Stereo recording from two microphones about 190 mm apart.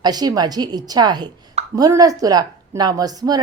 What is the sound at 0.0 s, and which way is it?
A woman's voice, 20° right (ahead or behind).